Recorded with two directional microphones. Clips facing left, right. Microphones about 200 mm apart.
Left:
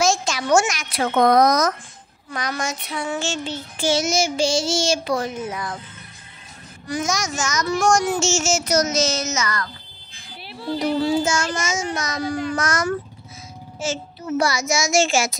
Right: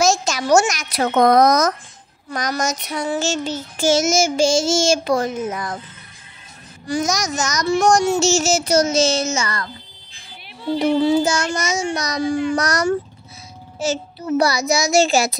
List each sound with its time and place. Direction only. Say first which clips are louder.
0.0 s a child's voice: right 2 dB; 40° right (ahead or behind)
2.3 s child singing: right 4 dB; 40° right (ahead or behind)
6.9 s a child's voice: right 3 dB; 40° right (ahead or behind)
7.6 s child singing: right 4 dB; 30° right (ahead or behind)
10.8 s child singing: right 4 dB; 25° right (ahead or behind)
11.2 s a child's voice: right 2 dB; 35° right (ahead or behind)